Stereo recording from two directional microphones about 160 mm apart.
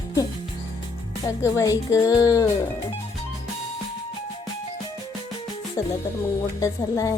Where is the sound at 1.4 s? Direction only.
20° left (ahead or behind).